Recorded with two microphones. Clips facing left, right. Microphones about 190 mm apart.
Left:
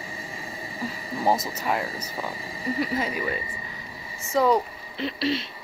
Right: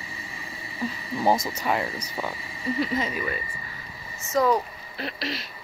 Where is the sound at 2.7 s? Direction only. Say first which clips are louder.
Even; 10° left (ahead or behind).